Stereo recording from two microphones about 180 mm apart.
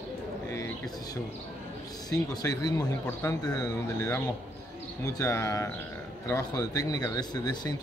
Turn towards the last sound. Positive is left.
turn(degrees=20)  # may be behind; listen again after turning